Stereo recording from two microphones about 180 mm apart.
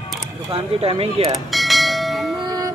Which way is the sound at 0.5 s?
30° right (ahead or behind).